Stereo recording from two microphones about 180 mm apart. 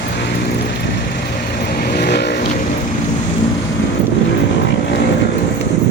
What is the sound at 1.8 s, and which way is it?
Vehicle, 60° left (ahead or behind).